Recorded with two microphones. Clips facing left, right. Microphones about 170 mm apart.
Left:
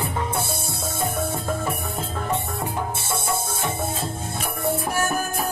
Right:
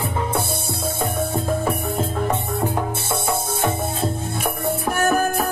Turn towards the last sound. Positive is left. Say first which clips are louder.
# right 5 dB
turn(degrees=-60)  # may be behind; listen again after turning